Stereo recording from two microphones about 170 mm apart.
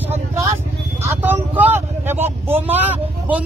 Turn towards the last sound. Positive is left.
turn(degrees=-10)  # may be behind; listen again after turning